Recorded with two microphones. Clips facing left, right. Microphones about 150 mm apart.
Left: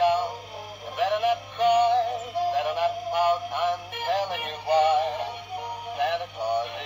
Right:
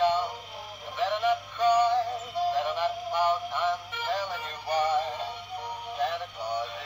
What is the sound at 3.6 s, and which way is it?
Music, 55° left (ahead or behind).